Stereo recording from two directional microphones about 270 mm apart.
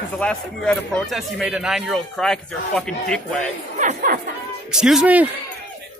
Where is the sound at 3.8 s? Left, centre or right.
Right.